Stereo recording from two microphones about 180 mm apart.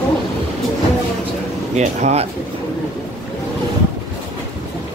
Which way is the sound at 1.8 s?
40° right (ahead or behind).